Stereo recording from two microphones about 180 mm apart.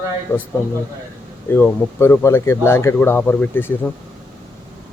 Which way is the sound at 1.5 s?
15° left (ahead or behind).